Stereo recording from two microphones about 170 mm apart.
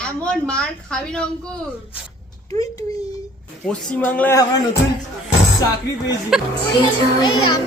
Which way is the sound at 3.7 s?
10° left (ahead or behind).